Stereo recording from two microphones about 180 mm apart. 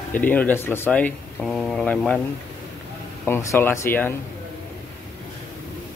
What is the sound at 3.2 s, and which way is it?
Speech, 10° left (ahead or behind).